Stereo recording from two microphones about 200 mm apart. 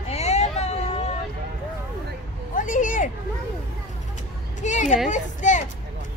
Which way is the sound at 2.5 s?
40° left (ahead or behind).